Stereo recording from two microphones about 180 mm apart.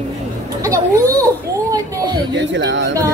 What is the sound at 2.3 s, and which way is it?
Speech, 80° right.